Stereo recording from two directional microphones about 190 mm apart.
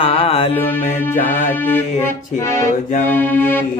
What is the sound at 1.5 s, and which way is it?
Accordion, 10° left (ahead or behind).